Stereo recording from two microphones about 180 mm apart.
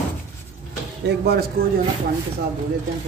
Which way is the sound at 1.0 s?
65° right (ahead or behind).